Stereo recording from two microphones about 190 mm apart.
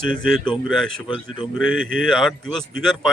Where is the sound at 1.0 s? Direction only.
25° left (ahead or behind).